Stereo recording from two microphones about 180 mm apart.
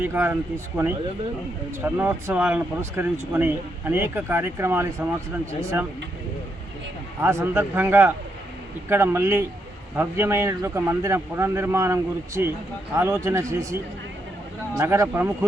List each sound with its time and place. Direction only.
0.0 s speech: 10° right (ahead or behind)
7.2 s speech: 15° right (ahead or behind)
14.8 s speech: 15° right (ahead or behind)